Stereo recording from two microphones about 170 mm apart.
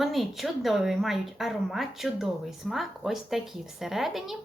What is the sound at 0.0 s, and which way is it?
A woman's voice, centre (ahead or behind).